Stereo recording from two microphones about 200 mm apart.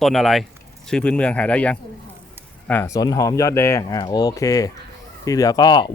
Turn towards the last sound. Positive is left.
turn(degrees=20)  # may be behind; listen again after turning